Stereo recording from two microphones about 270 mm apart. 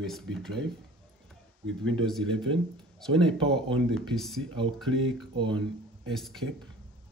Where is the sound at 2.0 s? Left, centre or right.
Centre.